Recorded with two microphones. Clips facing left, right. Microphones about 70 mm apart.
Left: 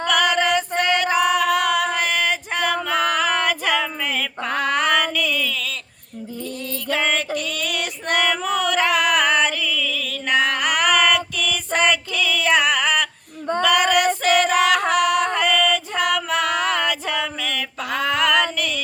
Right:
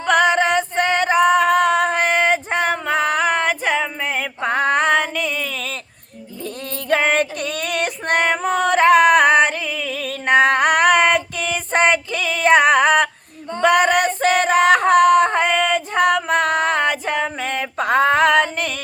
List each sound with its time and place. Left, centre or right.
0.1 s female singing: right
6.9 s female singing: right
14.2 s music: right